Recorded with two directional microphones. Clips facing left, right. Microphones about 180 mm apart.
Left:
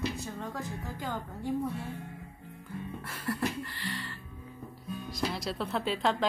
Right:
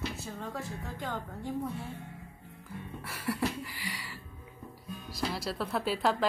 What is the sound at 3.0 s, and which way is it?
Music, 10° right (ahead or behind).